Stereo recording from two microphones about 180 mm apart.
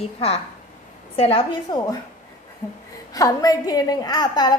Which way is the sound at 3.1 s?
20° left (ahead or behind).